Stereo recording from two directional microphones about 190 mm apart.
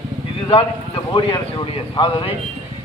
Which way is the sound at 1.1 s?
25° left (ahead or behind).